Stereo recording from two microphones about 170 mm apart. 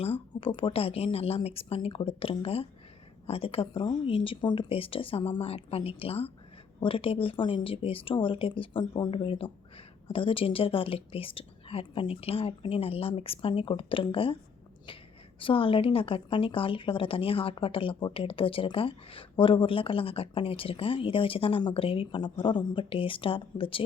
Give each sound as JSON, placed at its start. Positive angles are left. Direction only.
{"t": 0.0, "sound": "a woman's voice", "side_deg": 35}
{"t": 15.4, "sound": "a woman's voice", "side_deg": 30}